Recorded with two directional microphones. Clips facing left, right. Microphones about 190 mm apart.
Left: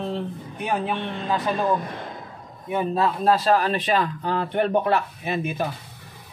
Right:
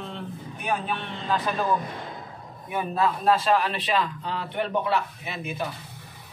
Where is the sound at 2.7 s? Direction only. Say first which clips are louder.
Left 3 dB; 30° left (ahead or behind).